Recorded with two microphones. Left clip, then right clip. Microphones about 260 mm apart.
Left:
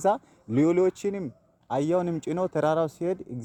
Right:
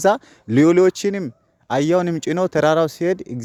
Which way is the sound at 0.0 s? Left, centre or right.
Right.